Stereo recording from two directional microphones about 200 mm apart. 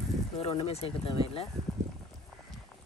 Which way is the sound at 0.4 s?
30° left (ahead or behind).